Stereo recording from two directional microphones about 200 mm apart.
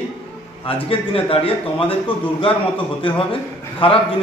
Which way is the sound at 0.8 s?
30° left (ahead or behind).